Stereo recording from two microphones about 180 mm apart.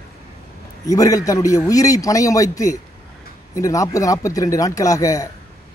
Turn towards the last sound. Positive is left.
turn(degrees=20)  # may be behind; listen again after turning